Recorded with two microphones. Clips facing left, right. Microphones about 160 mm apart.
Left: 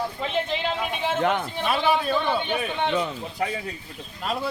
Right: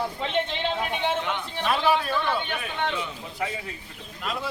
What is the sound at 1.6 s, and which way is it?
A man's voice, 15° left (ahead or behind).